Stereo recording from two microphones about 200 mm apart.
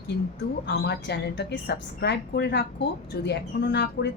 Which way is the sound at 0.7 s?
55° left (ahead or behind).